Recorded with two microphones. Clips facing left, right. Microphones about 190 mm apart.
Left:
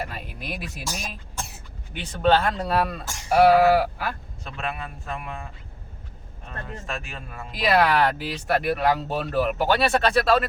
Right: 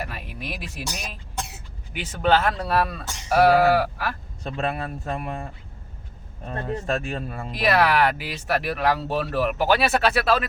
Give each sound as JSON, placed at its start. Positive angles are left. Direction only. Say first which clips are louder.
{"t": 0.0, "sound": "speech", "louder": "even", "side_deg": 0}
{"t": 1.9, "sound": "speech", "louder": "even", "side_deg": -5}
{"t": 4.4, "sound": "a man's voice", "louder": "right 5 dB", "side_deg": -35}
{"t": 7.5, "sound": "speech", "louder": "even", "side_deg": 0}